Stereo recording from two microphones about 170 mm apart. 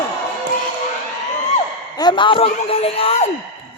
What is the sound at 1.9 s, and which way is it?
Speech, 25° left (ahead or behind).